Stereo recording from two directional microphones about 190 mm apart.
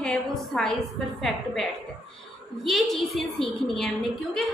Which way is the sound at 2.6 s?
Centre (ahead or behind).